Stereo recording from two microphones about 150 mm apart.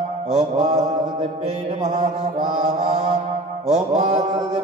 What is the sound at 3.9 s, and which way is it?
Mantra, 45° right (ahead or behind).